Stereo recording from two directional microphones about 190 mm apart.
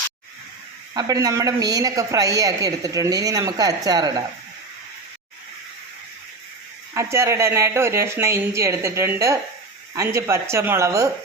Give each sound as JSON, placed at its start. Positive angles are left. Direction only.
{"t": 0.9, "sound": "a man's voice", "side_deg": -20}
{"t": 6.9, "sound": "a man's voice", "side_deg": -15}